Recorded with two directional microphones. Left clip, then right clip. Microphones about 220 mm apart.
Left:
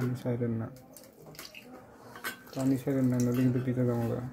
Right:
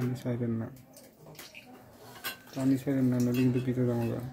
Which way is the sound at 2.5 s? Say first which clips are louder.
Right 1 dB; 10° right (ahead or behind).